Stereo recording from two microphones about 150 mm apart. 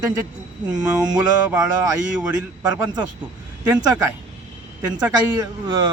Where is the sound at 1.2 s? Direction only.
10° right (ahead or behind).